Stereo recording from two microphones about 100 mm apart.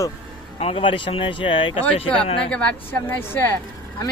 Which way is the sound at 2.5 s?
10° left (ahead or behind).